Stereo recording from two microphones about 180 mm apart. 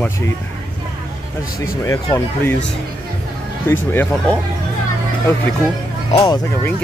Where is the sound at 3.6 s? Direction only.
10° left (ahead or behind).